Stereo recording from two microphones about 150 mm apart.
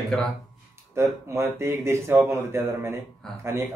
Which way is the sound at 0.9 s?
20° right (ahead or behind).